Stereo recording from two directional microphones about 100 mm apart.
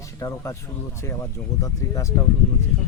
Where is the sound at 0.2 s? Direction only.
30° left (ahead or behind).